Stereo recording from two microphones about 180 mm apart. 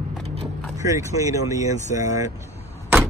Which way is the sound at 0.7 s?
20° right (ahead or behind).